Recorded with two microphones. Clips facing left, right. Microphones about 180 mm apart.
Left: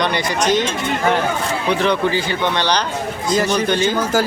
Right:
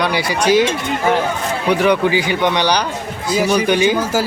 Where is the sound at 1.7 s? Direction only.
15° right (ahead or behind).